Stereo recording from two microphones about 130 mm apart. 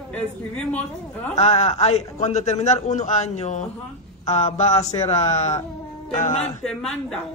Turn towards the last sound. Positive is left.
turn(degrees=5)  # may be behind; listen again after turning